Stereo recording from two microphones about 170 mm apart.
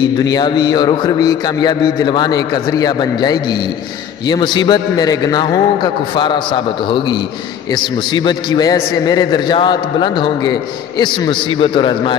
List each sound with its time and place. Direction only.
0.0 s a man's voice: 25° left (ahead or behind)